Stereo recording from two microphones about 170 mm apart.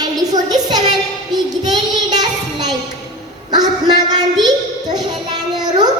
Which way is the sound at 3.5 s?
25° right (ahead or behind).